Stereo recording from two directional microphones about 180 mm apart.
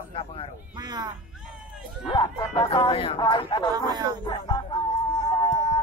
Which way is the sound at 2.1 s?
25° left (ahead or behind).